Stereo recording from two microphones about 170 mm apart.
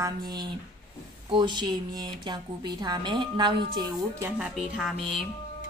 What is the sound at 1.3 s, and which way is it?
Speech, 25° right (ahead or behind).